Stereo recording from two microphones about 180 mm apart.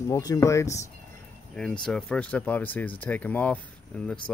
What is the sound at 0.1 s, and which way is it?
Speech, 20° left (ahead or behind).